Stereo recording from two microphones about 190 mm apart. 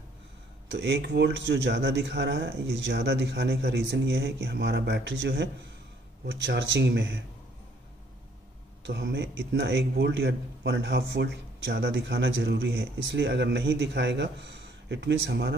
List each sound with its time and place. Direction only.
0.7 s speech: 65° right (ahead or behind)
8.8 s speech: 65° right (ahead or behind)